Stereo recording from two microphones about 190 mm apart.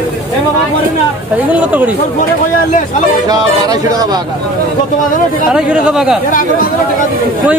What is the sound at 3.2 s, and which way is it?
Speech, 20° right (ahead or behind).